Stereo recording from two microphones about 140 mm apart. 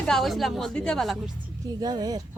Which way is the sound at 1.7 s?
30° right (ahead or behind).